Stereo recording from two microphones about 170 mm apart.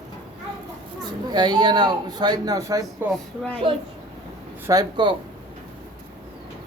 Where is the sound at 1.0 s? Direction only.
25° right (ahead or behind).